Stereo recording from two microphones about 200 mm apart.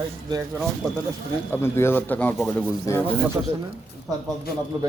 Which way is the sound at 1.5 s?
10° left (ahead or behind).